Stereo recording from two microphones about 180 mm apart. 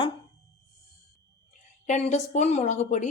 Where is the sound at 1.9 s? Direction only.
40° left (ahead or behind).